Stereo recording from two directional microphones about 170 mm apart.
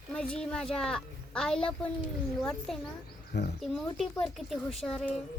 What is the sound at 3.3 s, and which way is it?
Speech, 90° left.